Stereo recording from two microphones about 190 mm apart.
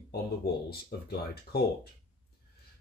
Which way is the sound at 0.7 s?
55° left (ahead or behind).